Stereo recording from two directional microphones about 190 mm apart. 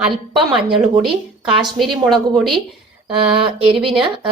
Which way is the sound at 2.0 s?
Centre (ahead or behind).